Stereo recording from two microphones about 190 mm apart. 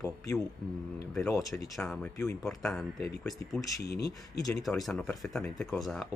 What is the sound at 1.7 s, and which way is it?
Speech, centre (ahead or behind).